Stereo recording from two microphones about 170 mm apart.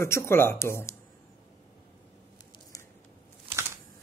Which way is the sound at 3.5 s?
30° right (ahead or behind).